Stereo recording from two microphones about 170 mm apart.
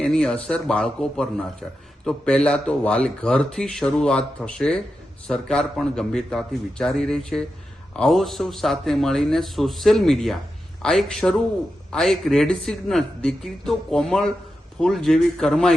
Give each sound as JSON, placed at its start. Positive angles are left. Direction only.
{"t": 0.0, "sound": "speech", "side_deg": 5}